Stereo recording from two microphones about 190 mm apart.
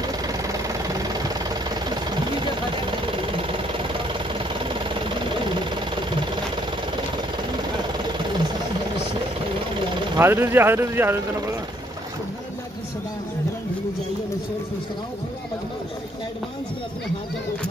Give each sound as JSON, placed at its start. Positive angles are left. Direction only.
{"t": 0.0, "sound": "a sound", "side_deg": -15}
{"t": 3.3, "sound": "engine", "side_deg": -30}
{"t": 10.1, "sound": "speech", "side_deg": -10}